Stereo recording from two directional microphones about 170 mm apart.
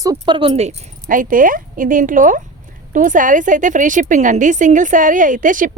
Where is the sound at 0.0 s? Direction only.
25° right (ahead or behind).